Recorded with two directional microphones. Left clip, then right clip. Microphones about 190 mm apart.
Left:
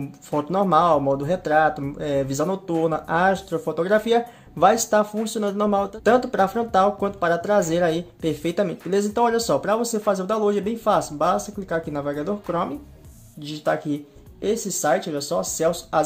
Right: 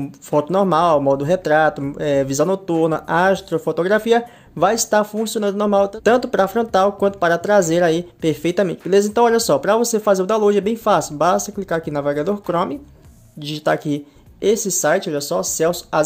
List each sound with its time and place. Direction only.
0.3 s speech: 25° right (ahead or behind)